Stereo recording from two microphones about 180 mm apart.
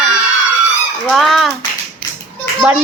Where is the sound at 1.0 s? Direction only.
Centre (ahead or behind).